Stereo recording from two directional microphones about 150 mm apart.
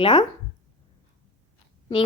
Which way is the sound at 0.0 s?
30° left (ahead or behind).